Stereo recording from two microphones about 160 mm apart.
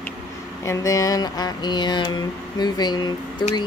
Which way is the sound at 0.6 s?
20° left (ahead or behind).